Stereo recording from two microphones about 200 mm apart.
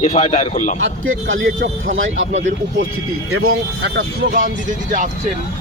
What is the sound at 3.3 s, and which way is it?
Speech, 90° right.